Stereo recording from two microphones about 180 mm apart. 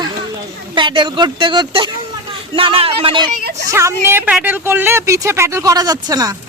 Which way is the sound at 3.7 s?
15° right (ahead or behind).